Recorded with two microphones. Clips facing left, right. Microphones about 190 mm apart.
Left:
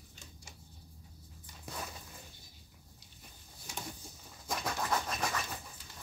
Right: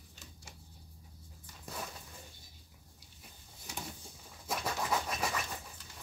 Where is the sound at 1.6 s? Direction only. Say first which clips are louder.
Even; centre (ahead or behind).